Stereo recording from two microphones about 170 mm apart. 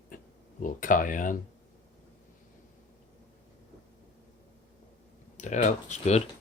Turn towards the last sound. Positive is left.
turn(degrees=40)  # may be behind; listen again after turning